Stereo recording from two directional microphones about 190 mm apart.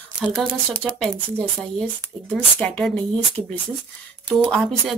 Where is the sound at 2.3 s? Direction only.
5° left (ahead or behind).